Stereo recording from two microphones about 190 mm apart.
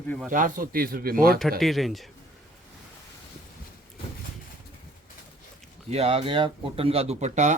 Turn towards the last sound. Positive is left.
turn(degrees=-40)  # may be behind; listen again after turning